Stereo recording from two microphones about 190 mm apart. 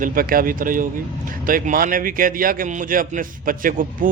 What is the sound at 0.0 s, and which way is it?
A man's voice, 50° right (ahead or behind).